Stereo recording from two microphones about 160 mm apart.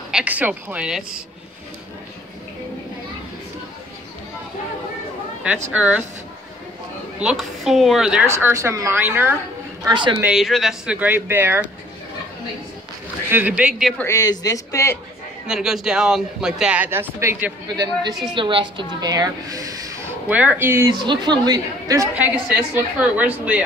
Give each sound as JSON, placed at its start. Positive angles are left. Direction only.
{"t": 0.1, "sound": "speech", "side_deg": -10}
{"t": 5.7, "sound": "speech", "side_deg": -10}
{"t": 7.2, "sound": "speech", "side_deg": -5}
{"t": 8.4, "sound": "speech", "side_deg": -15}
{"t": 9.8, "sound": "a woman's voice", "side_deg": -30}
{"t": 10.2, "sound": "speech", "side_deg": 0}
{"t": 13.3, "sound": "speech", "side_deg": -10}
{"t": 13.9, "sound": "a man's voice", "side_deg": 20}
{"t": 15.4, "sound": "speech", "side_deg": -5}
{"t": 18.3, "sound": "a woman's voice", "side_deg": -30}
{"t": 20.2, "sound": "speech", "side_deg": -10}
{"t": 21.0, "sound": "a woman's voice", "side_deg": -30}
{"t": 22.1, "sound": "speech", "side_deg": -10}